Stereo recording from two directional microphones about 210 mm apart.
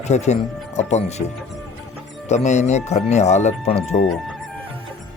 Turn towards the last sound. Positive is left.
turn(degrees=30)  # may be behind; listen again after turning